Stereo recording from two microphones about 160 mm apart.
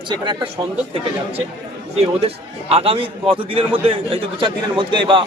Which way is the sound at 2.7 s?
35° right (ahead or behind).